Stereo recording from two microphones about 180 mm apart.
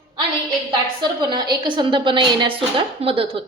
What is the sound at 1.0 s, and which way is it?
A woman's voice, 25° right (ahead or behind).